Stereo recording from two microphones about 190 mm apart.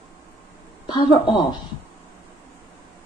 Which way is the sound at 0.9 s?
25° left (ahead or behind).